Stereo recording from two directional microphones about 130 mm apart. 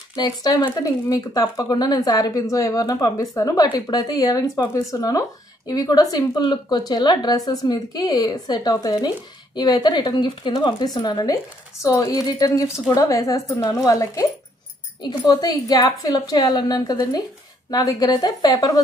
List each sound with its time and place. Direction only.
0.1 s a woman's voice: 30° left (ahead or behind)